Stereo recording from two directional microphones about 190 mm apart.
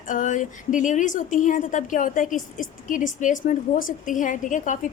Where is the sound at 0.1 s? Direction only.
40° left (ahead or behind).